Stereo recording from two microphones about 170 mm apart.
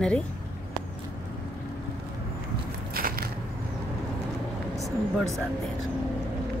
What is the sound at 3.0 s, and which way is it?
Biting, 60° right (ahead or behind).